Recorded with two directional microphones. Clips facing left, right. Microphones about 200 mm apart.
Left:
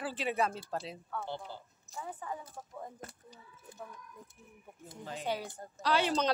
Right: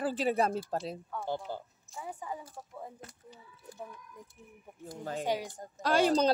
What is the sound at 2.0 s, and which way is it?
Speech, 10° right (ahead or behind).